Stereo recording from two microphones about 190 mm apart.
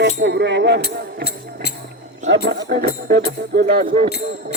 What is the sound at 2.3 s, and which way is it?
Speech, 65° right (ahead or behind).